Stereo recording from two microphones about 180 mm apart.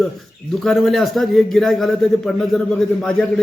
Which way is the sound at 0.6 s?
Centre (ahead or behind).